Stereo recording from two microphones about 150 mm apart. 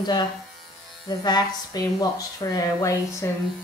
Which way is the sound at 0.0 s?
30° left (ahead or behind).